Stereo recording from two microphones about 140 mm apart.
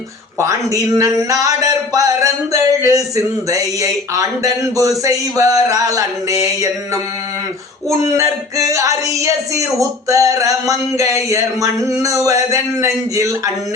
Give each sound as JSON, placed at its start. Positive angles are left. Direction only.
{"t": 0.3, "sound": "speech", "side_deg": -20}